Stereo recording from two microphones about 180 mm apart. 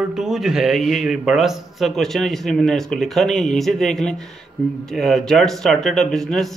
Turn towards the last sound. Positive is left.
turn(degrees=0)  # may be behind; listen again after turning